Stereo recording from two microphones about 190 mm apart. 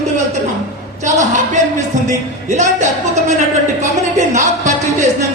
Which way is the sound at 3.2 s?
40° right (ahead or behind).